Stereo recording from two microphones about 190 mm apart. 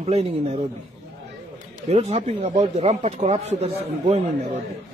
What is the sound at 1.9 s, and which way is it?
A man's voice, 35° right (ahead or behind).